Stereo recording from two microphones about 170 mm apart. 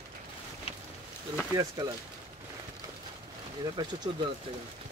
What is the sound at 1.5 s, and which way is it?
Speech, 20° right (ahead or behind).